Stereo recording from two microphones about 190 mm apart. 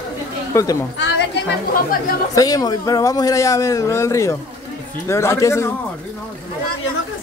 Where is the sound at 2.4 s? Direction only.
20° left (ahead or behind).